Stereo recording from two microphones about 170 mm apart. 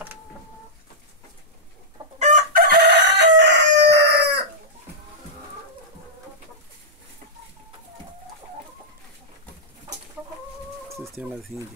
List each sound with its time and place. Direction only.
2.1 s chicken: 45° right (ahead or behind)
2.6 s chicken: 70° right (ahead or behind)
11.2 s speech: 10° right (ahead or behind)